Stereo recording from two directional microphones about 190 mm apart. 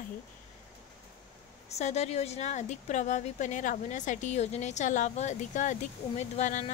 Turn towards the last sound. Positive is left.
turn(degrees=40)  # may be behind; listen again after turning